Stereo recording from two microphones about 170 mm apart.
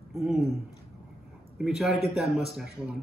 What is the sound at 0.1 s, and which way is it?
Speech, centre (ahead or behind).